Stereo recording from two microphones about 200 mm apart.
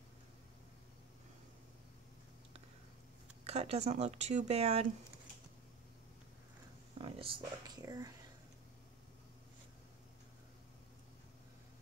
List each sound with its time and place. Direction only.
3.4 s speech: 30° right (ahead or behind)
7.0 s speech: 25° right (ahead or behind)